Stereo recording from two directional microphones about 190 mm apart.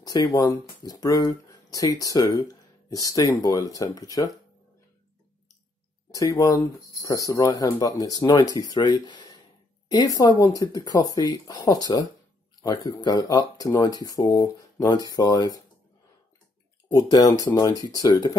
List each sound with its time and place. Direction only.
0.0 s speech: 20° left (ahead or behind)
6.1 s speech: 15° left (ahead or behind)
16.9 s speech: 20° left (ahead or behind)